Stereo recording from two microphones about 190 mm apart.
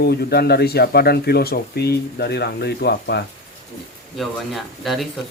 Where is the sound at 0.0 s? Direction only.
55° left (ahead or behind).